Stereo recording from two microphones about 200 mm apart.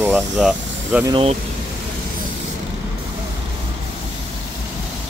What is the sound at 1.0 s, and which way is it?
Speech, 25° right (ahead or behind).